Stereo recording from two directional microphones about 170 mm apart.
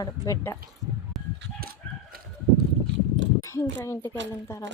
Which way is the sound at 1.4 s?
60° right (ahead or behind).